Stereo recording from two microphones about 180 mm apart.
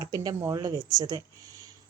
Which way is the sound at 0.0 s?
20° right (ahead or behind).